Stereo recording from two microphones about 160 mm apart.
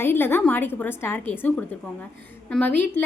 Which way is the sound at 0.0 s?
15° left (ahead or behind).